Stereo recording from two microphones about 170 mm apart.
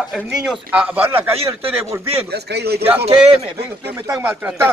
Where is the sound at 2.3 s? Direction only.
70° right (ahead or behind).